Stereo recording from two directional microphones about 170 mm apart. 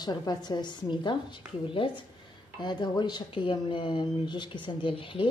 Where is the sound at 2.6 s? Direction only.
25° left (ahead or behind).